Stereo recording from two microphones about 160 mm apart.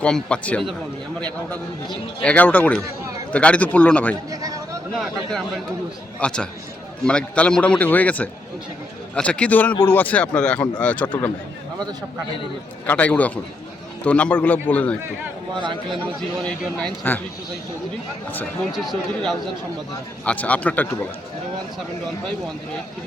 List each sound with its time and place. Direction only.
0.0 s a man's voice: 5° left (ahead or behind)
4.3 s a sound: 20° right (ahead or behind)
6.1 s a man's voice: 5° left (ahead or behind)
12.8 s a man's voice: 10° left (ahead or behind)
16.4 s speech: 5° left (ahead or behind)
18.7 s a man's voice: centre (ahead or behind)